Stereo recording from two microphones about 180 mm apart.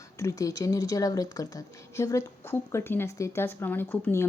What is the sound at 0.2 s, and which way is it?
A woman's voice, 20° left (ahead or behind).